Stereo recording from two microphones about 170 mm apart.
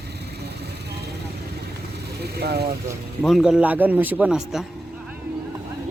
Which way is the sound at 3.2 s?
Centre (ahead or behind).